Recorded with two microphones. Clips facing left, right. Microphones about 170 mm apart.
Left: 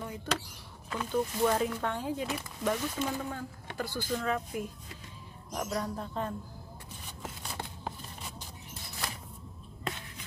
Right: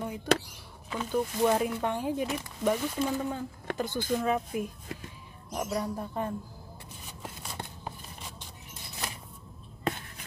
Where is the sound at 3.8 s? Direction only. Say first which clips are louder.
Right 4 dB; 20° right (ahead or behind).